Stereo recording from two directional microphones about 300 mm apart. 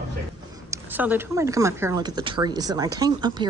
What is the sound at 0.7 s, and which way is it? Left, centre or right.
Speech, centre.